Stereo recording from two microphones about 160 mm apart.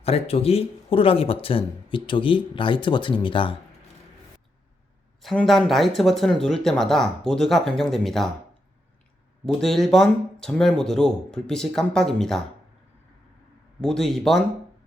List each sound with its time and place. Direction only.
0.0 s speech: 40° left (ahead or behind)
5.2 s speech: centre (ahead or behind)
9.5 s speech: centre (ahead or behind)
13.8 s speech: 5° left (ahead or behind)